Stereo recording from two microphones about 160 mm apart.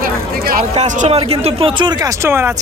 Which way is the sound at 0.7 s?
45° right (ahead or behind).